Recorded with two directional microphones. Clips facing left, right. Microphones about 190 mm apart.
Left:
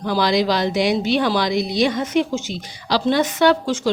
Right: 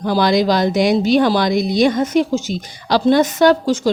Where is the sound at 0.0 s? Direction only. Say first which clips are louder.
Right 3 dB; 50° right (ahead or behind).